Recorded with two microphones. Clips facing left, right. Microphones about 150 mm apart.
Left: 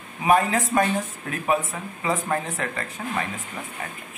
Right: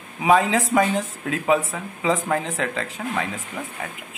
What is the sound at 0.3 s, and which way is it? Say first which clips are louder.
Speech: right 2 dB; 90° right.